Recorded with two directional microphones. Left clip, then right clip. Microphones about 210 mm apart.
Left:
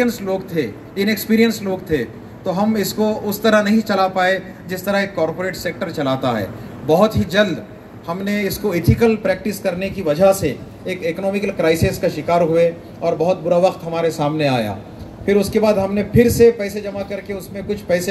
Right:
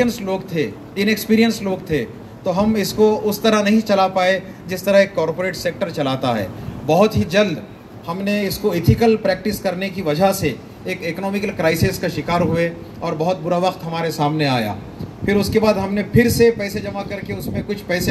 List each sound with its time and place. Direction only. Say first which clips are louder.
0.0 s a man's voice: left 1 dB; 45° right (ahead or behind)